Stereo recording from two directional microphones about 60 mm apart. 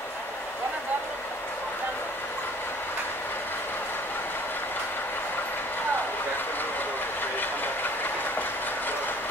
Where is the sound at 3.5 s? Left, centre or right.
Left.